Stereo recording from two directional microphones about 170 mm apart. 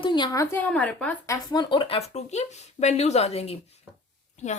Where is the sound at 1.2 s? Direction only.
20° left (ahead or behind).